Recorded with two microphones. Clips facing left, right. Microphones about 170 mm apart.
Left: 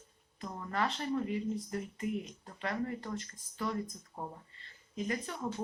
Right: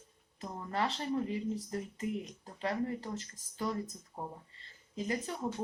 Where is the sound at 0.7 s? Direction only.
30° right (ahead or behind).